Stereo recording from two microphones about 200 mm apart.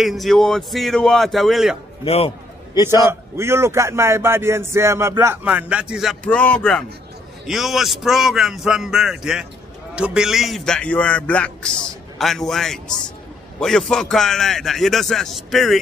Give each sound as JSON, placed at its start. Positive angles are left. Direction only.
{"t": 0.0, "sound": "a man's voice", "side_deg": 0}
{"t": 2.0, "sound": "a sound", "side_deg": 30}
{"t": 3.1, "sound": "a man's voice", "side_deg": -10}